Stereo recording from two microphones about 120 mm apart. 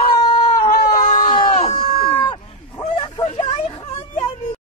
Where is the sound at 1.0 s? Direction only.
90° left.